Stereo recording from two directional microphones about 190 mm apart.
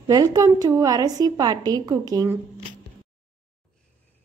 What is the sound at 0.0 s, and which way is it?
A woman's voice, 20° right (ahead or behind).